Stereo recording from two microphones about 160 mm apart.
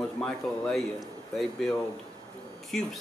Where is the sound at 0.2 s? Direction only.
Centre (ahead or behind).